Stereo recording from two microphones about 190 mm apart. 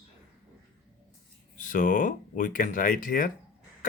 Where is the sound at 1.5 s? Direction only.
45° left (ahead or behind).